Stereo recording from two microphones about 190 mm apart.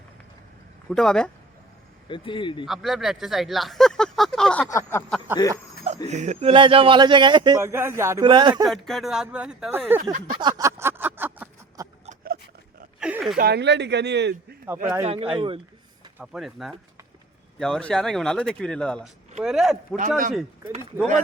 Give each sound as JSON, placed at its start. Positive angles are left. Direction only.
{"t": 0.9, "sound": "speech", "side_deg": 5}
{"t": 2.0, "sound": "speech", "side_deg": 25}
{"t": 2.6, "sound": "speech", "side_deg": 0}
{"t": 4.7, "sound": "a sound", "side_deg": 15}
{"t": 5.4, "sound": "speech", "side_deg": 25}
{"t": 6.1, "sound": "speech", "side_deg": -35}
{"t": 7.6, "sound": "speech", "side_deg": -15}
{"t": 8.6, "sound": "speech", "side_deg": 0}
{"t": 10.4, "sound": "a sound", "side_deg": -15}
{"t": 13.0, "sound": "a sound", "side_deg": -5}
{"t": 13.3, "sound": "speech", "side_deg": -55}
{"t": 15.0, "sound": "speech", "side_deg": -30}
{"t": 16.1, "sound": "speech", "side_deg": -5}
{"t": 20.0, "sound": "speech", "side_deg": -45}